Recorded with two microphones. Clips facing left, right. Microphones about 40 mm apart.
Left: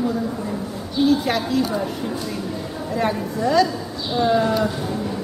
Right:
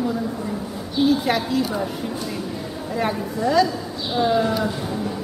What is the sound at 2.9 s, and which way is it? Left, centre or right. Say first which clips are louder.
Speech: left 1 dB; centre.